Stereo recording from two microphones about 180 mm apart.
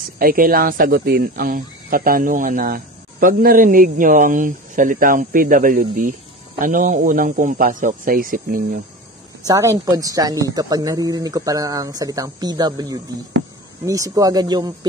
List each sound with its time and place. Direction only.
0.2 s speech: 55° right (ahead or behind)
9.4 s speech: 20° right (ahead or behind)